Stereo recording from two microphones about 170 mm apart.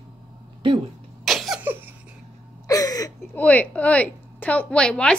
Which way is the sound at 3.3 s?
10° left (ahead or behind).